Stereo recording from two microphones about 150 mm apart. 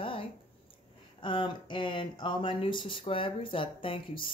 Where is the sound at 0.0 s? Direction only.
35° left (ahead or behind).